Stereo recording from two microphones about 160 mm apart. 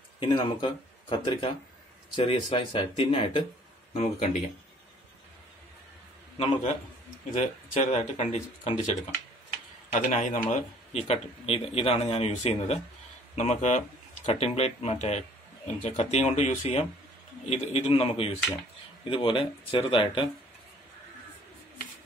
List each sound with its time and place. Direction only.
0.2 s speech: 30° left (ahead or behind)
6.3 s speech: 40° left (ahead or behind)
9.9 s speech: 50° left (ahead or behind)